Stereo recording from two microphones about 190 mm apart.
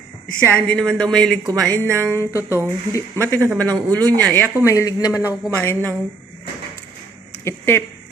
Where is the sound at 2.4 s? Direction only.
10° right (ahead or behind).